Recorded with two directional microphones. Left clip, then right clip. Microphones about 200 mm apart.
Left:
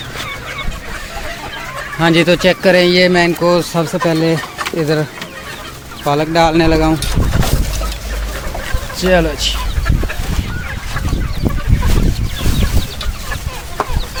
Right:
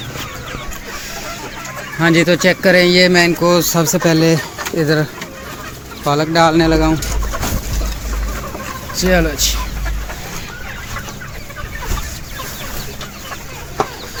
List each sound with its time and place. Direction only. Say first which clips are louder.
2.0 s speech: left 1 dB; 15° left (ahead or behind)
6.1 s speech: even; 10° left (ahead or behind)
9.0 s speech: left 2 dB; 15° left (ahead or behind)